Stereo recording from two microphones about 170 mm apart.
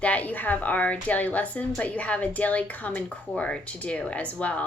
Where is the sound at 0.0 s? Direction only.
10° left (ahead or behind).